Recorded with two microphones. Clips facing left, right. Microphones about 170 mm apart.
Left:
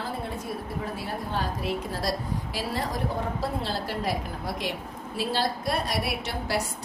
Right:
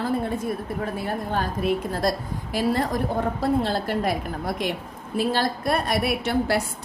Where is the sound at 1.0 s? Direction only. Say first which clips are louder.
Right 4 dB; 55° right (ahead or behind).